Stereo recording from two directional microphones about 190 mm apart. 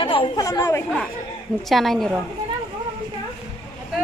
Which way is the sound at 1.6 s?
Centre (ahead or behind).